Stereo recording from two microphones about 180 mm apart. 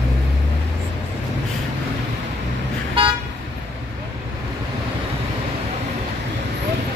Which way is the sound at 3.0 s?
30° right (ahead or behind).